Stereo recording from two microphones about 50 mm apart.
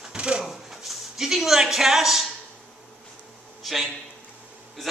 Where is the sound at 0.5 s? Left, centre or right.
Centre.